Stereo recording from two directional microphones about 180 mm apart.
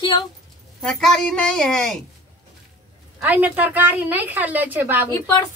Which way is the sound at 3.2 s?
10° right (ahead or behind).